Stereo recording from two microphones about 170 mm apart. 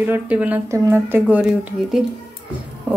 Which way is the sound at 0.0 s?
10° right (ahead or behind).